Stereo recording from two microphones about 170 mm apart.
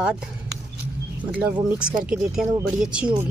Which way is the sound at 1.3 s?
10° right (ahead or behind).